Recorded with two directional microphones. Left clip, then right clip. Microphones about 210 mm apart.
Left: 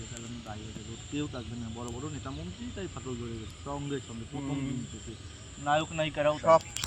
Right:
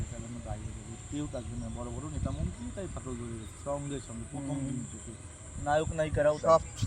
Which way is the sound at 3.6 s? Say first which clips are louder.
Right 1 dB; 10° right (ahead or behind).